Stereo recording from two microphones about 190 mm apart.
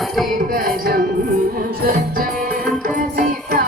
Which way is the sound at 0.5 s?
50° right (ahead or behind).